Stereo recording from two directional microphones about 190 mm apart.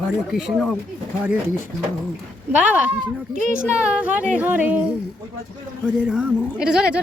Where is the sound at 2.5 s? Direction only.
5° right (ahead or behind).